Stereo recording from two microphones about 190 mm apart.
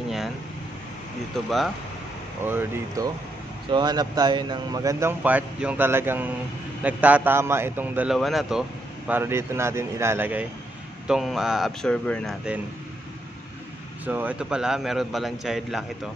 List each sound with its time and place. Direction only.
2.4 s a man's voice: 10° right (ahead or behind)
3.7 s a man's voice: 20° right (ahead or behind); by 12.4 s 5° left (ahead or behind)
14.0 s speech: 10° right (ahead or behind)